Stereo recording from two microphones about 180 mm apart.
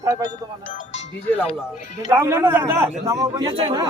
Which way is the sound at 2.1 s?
15° right (ahead or behind).